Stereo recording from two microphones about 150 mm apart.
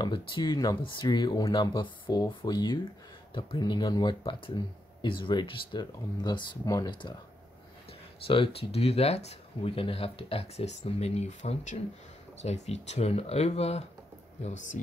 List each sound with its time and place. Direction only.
0.0 s speech: 30° left (ahead or behind)
8.3 s speech: 40° left (ahead or behind)